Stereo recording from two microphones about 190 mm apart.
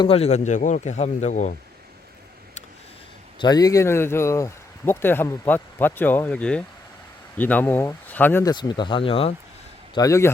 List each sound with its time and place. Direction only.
0.0 s a man's voice: 30° left (ahead or behind)
3.3 s speech: 20° left (ahead or behind)
8.5 s speech: 25° left (ahead or behind)
9.9 s speech: 15° left (ahead or behind)